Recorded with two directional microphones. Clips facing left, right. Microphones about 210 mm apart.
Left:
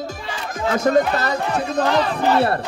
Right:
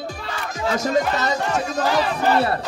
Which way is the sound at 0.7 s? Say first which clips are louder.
Left 4 dB; 55° left (ahead or behind).